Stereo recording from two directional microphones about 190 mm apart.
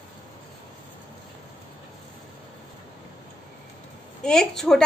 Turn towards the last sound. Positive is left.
turn(degrees=5)  # may be behind; listen again after turning